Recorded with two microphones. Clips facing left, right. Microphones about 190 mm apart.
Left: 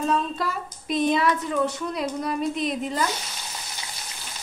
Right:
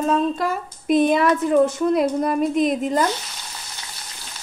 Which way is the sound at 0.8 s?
50° right (ahead or behind).